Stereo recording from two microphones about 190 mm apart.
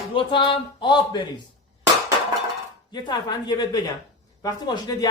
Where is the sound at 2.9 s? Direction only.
20° left (ahead or behind).